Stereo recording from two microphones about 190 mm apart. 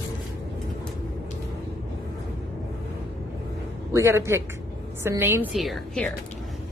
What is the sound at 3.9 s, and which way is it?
A woman's voice, 15° right (ahead or behind).